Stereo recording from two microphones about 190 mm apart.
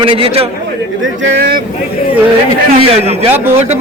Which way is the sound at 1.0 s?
80° right.